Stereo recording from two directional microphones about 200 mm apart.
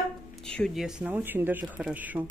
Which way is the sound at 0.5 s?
Centre (ahead or behind).